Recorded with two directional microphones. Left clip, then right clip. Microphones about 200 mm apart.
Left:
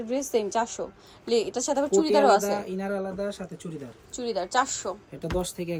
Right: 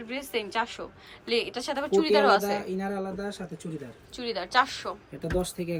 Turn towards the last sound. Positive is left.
turn(degrees=5)  # may be behind; listen again after turning